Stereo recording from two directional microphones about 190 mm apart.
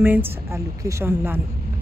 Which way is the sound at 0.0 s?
10° right (ahead or behind).